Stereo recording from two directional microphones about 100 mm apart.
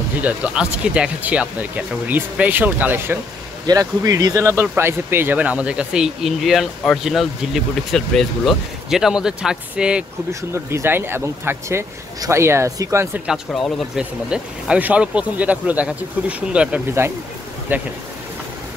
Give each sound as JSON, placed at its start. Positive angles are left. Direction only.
{"t": 0.2, "sound": "speech", "side_deg": -10}
{"t": 3.6, "sound": "speech", "side_deg": -40}
{"t": 4.4, "sound": "speech", "side_deg": -25}
{"t": 10.5, "sound": "speech", "side_deg": -25}
{"t": 13.6, "sound": "speech", "side_deg": 5}
{"t": 13.9, "sound": "speech", "side_deg": -10}